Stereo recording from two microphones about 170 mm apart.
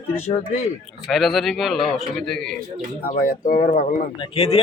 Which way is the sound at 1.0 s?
Centre (ahead or behind).